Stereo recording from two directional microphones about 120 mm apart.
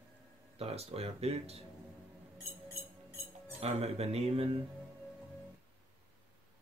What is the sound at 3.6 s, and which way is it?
Speech, 60° right (ahead or behind).